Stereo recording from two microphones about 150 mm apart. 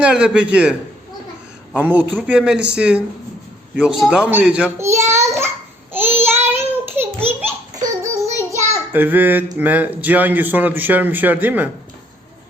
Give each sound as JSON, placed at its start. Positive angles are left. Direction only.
{"t": 0.0, "sound": "a man's voice", "side_deg": -5}
{"t": 4.8, "sound": "a child's voice", "side_deg": -20}
{"t": 5.9, "sound": "child singing", "side_deg": -15}
{"t": 9.6, "sound": "a man's voice", "side_deg": -10}